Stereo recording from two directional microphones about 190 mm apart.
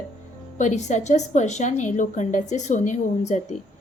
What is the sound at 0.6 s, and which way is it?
A woman's voice, 40° left (ahead or behind).